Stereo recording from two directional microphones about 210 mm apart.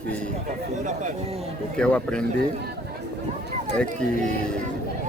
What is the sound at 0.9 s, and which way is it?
Speech, 35° right (ahead or behind).